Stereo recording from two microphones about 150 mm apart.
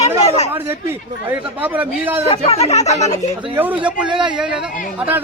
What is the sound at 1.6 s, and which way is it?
Speech, 10° right (ahead or behind).